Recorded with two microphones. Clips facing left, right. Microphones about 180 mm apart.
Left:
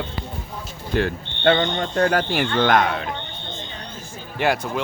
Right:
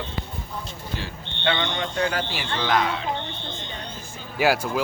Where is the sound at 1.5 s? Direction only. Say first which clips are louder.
Left 5 dB; 45° left (ahead or behind).